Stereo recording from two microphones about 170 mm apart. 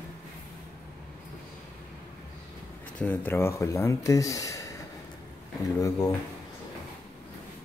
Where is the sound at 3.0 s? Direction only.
10° left (ahead or behind).